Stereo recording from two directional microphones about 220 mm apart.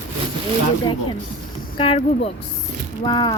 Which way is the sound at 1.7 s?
25° left (ahead or behind).